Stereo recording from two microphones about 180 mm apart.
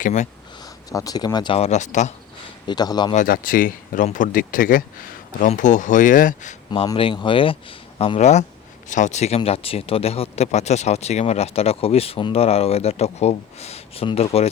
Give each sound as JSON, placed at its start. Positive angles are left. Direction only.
{"t": 0.0, "sound": "speech", "side_deg": 45}
{"t": 0.6, "sound": "speech", "side_deg": 20}
{"t": 2.6, "sound": "speech", "side_deg": 20}
{"t": 3.2, "sound": "speech", "side_deg": 50}
{"t": 6.7, "sound": "speech", "side_deg": 25}